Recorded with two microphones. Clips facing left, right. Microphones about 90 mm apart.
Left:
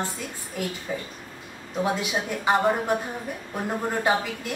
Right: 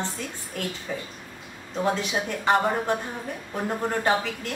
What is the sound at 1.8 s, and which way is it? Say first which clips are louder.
Speech: even; 10° left (ahead or behind).